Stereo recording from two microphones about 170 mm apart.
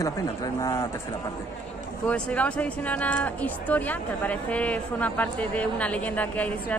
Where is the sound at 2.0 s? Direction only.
10° left (ahead or behind).